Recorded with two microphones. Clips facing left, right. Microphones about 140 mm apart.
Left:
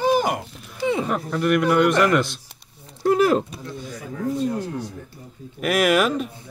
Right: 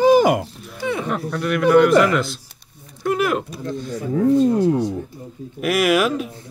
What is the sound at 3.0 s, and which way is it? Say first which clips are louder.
Speech: left 3 dB; 35° left (ahead or behind).